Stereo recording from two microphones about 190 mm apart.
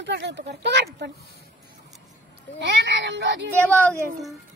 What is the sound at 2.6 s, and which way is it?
Speech, 70° right (ahead or behind).